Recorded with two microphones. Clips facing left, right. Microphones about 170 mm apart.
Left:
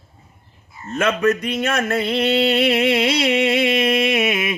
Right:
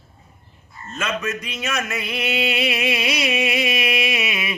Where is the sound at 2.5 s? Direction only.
55° left (ahead or behind).